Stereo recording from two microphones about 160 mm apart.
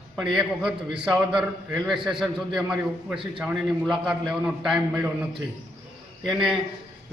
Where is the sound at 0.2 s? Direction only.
5° right (ahead or behind).